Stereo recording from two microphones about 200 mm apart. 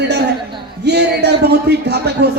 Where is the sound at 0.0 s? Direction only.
55° right (ahead or behind).